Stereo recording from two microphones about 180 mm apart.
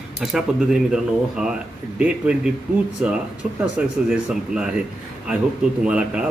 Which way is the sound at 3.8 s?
5° right (ahead or behind).